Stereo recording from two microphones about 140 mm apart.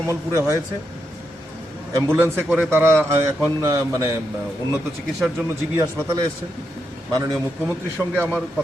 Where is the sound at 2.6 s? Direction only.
15° right (ahead or behind).